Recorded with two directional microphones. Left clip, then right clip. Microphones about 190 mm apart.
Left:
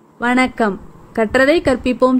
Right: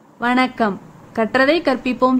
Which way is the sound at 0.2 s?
20° left (ahead or behind).